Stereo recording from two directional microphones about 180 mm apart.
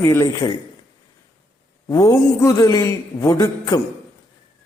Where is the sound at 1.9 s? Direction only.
20° left (ahead or behind).